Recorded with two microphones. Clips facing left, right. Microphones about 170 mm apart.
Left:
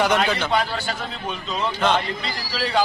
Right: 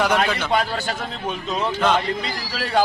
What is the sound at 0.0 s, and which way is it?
Speech, centre (ahead or behind).